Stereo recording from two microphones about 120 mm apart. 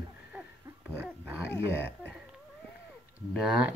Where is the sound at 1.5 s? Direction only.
15° left (ahead or behind).